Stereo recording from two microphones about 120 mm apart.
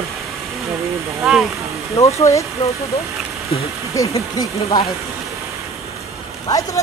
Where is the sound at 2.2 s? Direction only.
25° left (ahead or behind).